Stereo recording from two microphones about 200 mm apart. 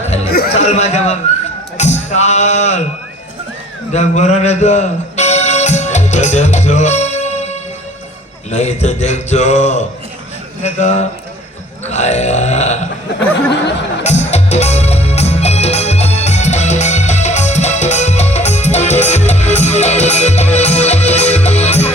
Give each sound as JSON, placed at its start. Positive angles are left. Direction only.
{"t": 0.6, "sound": "speech", "side_deg": 35}
{"t": 3.9, "sound": "music", "side_deg": 35}
{"t": 8.4, "sound": "speech", "side_deg": 35}
{"t": 11.9, "sound": "burping", "side_deg": 35}
{"t": 14.0, "sound": "music", "side_deg": 35}